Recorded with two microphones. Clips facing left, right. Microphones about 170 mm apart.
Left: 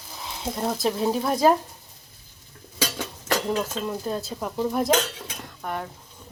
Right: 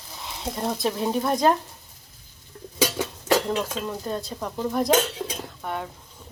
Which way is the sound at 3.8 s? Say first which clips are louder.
Left 1 dB; 5° left (ahead or behind).